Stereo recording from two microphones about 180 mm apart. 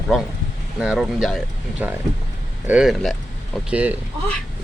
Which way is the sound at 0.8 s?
5° right (ahead or behind).